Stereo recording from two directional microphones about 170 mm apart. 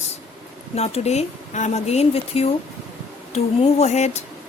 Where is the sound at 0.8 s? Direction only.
40° left (ahead or behind).